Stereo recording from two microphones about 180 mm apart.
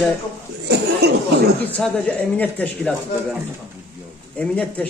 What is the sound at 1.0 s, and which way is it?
Speech, 65° right (ahead or behind).